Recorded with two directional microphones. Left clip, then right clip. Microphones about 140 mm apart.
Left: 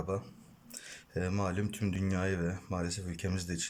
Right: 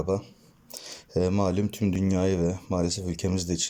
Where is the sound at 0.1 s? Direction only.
30° right (ahead or behind).